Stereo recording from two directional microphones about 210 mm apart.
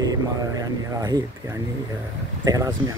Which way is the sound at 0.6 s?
15° right (ahead or behind).